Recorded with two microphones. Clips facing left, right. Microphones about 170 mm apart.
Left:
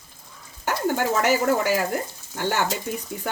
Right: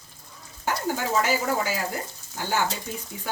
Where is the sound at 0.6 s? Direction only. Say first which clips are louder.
Left 4 dB; 65° left (ahead or behind).